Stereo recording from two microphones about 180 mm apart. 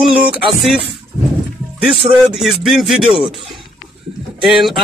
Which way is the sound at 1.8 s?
Centre (ahead or behind).